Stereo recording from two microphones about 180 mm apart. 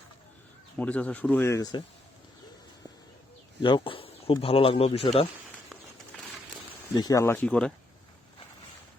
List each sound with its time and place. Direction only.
0.8 s speech: 10° left (ahead or behind)
3.6 s speech: 30° left (ahead or behind)
6.9 s speech: 20° left (ahead or behind); by 7.7 s 5° left (ahead or behind)